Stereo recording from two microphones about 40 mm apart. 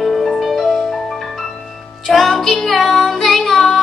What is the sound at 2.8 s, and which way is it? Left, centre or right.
Child singing, centre.